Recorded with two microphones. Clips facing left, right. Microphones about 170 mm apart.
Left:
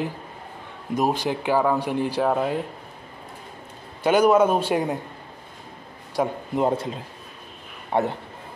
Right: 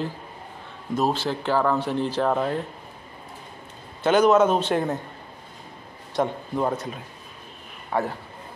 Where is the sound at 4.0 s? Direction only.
10° left (ahead or behind).